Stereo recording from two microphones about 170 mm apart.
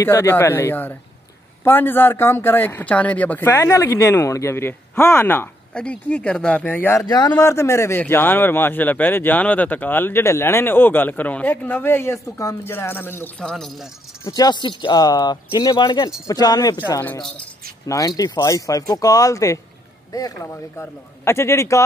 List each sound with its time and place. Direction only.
0.0 s speech: 15° left (ahead or behind)
14.2 s speech: 20° left (ahead or behind)
17.0 s speech: 10° left (ahead or behind)